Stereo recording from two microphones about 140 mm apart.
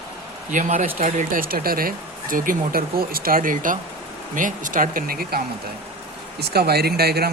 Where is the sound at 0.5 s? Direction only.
70° right (ahead or behind); by 5.4 s 90° right.